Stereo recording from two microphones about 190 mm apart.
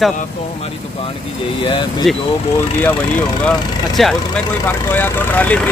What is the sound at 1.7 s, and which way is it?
Speech, 25° left (ahead or behind).